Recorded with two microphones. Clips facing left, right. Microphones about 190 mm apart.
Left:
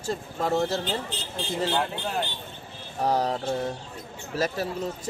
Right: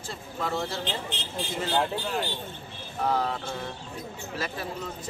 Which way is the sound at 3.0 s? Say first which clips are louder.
Left 3 dB; 40° left (ahead or behind).